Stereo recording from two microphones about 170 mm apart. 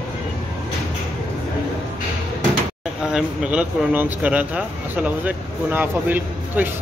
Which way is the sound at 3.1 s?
5° right (ahead or behind).